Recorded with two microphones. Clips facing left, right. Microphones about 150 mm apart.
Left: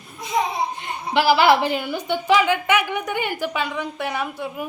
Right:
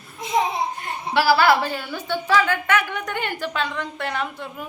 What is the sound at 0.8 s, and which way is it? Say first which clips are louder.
A woman's voice: left 1 dB; 20° left (ahead or behind).